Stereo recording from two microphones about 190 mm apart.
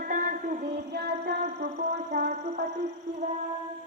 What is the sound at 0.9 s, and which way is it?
Child singing, 60° right (ahead or behind).